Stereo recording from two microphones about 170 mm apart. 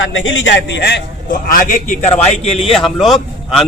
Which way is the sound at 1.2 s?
50° left (ahead or behind).